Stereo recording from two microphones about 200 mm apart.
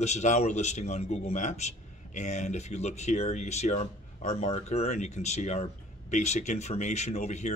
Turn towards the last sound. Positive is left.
turn(degrees=35)  # may be behind; listen again after turning